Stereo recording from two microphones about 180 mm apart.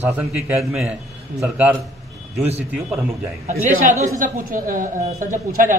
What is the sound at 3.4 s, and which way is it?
A woman's voice, 45° right (ahead or behind).